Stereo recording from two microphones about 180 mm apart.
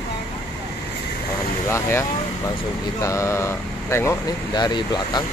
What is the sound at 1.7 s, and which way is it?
Speech, 15° left (ahead or behind).